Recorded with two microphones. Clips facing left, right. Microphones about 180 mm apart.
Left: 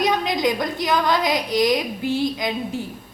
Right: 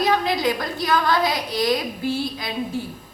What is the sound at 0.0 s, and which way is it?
A woman's voice, 15° left (ahead or behind).